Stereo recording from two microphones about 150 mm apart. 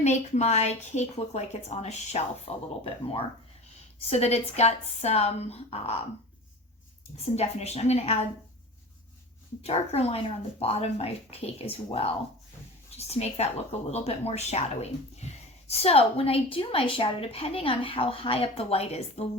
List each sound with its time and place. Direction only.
0.0 s a woman's voice: 50° left (ahead or behind)
7.2 s a woman's voice: 45° left (ahead or behind)
9.6 s speech: 45° left (ahead or behind)